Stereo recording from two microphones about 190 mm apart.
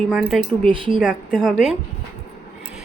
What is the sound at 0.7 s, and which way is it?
Speech, 25° right (ahead or behind).